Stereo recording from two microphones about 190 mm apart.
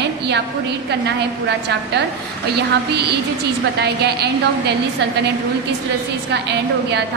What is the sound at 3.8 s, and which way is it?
Speech, 60° right (ahead or behind).